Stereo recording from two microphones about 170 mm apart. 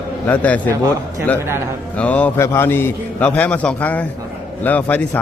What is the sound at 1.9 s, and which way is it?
A man's voice, 10° left (ahead or behind).